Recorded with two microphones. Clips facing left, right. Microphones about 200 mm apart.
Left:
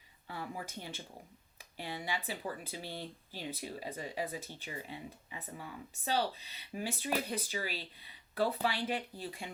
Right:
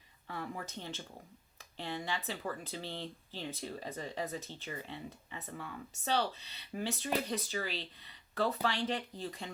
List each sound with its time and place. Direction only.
0.3 s speech: 10° left (ahead or behind)